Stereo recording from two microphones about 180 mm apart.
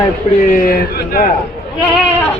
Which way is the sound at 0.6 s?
55° left (ahead or behind).